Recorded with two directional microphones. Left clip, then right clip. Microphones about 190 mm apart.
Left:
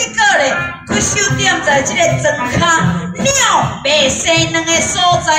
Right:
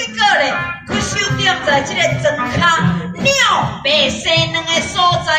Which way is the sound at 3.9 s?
20° left (ahead or behind).